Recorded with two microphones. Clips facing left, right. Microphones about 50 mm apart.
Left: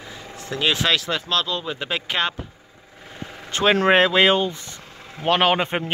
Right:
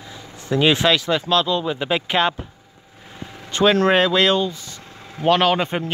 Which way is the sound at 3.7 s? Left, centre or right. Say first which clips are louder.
Left 4 dB; centre.